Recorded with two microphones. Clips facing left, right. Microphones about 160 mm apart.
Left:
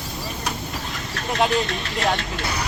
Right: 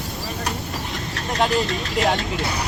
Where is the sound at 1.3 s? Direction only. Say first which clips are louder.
Even; centre (ahead or behind).